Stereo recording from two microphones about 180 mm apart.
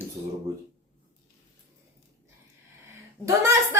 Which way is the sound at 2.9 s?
15° right (ahead or behind).